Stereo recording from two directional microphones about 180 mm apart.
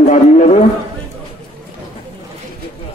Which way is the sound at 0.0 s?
40° left (ahead or behind).